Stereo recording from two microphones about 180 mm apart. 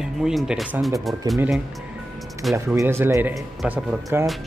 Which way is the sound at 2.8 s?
15° right (ahead or behind).